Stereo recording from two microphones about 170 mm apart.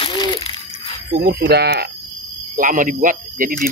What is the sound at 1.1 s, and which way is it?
Speech, 65° right (ahead or behind).